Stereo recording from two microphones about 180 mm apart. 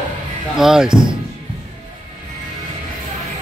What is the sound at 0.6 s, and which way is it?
Speech, 5° right (ahead or behind).